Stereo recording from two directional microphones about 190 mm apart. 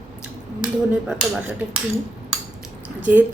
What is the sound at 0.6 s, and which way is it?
Speech, 5° right (ahead or behind).